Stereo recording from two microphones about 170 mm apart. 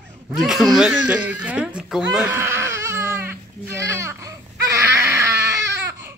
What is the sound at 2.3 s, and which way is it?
Baby cry, 15° right (ahead or behind).